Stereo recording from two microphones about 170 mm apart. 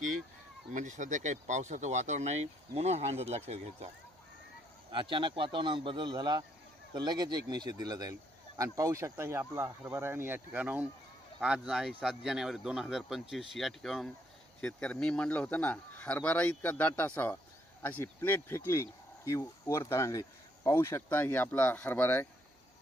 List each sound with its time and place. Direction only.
0.7 s speech: 45° right (ahead or behind)
4.9 s a man's voice: 30° right (ahead or behind); by 22.3 s 10° left (ahead or behind)